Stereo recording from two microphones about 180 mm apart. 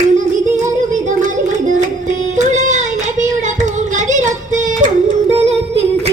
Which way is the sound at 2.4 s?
40° right (ahead or behind).